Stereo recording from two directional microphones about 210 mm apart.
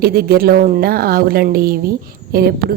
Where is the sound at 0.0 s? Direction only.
45° right (ahead or behind).